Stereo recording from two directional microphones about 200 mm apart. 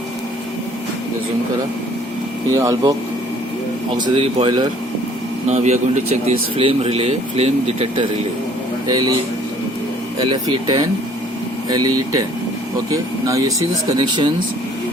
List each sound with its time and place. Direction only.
2.5 s speech: 15° right (ahead or behind)
3.9 s speech: 25° right (ahead or behind)
8.9 s speech: 20° right (ahead or behind)
10.2 s speech: 20° right (ahead or behind)